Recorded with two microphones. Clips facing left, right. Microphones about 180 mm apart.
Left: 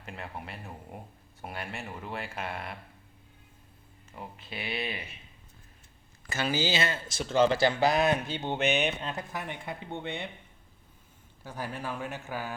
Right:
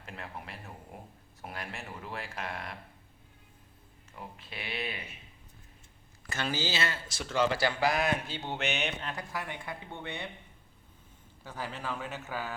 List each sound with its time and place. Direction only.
0.0 s a sound: centre (ahead or behind)
1.4 s speech: centre (ahead or behind)
4.1 s speech: centre (ahead or behind)
6.3 s speech: 10° left (ahead or behind)
11.4 s speech: 10° left (ahead or behind)